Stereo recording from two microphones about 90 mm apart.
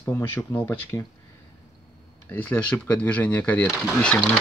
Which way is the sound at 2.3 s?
20° left (ahead or behind).